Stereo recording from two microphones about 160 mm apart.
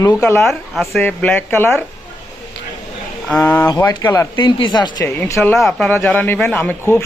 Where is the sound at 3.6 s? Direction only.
20° left (ahead or behind).